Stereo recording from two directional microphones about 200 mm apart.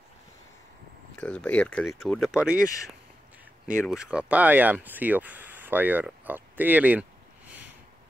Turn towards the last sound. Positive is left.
turn(degrees=-10)  # may be behind; listen again after turning